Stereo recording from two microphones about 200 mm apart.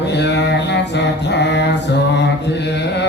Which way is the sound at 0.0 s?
60° left (ahead or behind).